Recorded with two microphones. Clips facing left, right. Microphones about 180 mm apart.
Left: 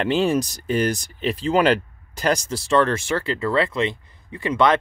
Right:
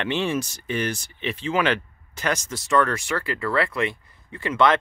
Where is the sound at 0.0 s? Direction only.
40° left (ahead or behind).